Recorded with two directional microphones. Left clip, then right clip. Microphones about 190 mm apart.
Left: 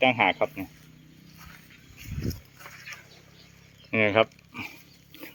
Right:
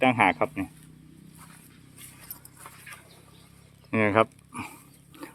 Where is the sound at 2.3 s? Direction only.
Centre (ahead or behind).